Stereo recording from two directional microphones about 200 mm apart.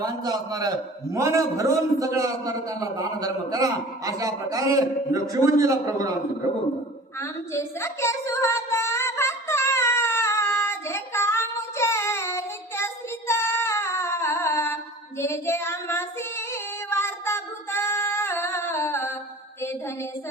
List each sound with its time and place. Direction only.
0.0 s a man's voice: 20° right (ahead or behind)
7.2 s child singing: 15° left (ahead or behind)
15.2 s female singing: 15° left (ahead or behind)